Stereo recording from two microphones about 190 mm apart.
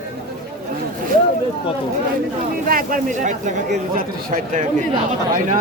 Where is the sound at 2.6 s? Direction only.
45° right (ahead or behind).